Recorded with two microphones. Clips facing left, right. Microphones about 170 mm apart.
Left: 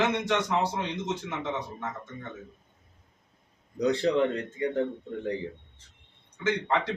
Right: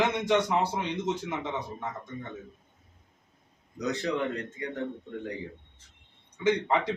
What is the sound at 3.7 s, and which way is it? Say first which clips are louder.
Speech: left 6 dB; 30° left (ahead or behind).